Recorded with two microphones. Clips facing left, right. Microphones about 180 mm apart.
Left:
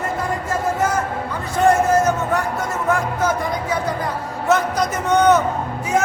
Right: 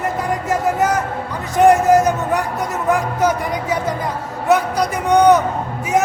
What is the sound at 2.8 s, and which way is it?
Music, 15° right (ahead or behind).